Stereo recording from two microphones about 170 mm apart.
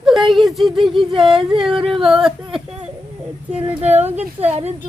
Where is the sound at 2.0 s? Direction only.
Centre (ahead or behind).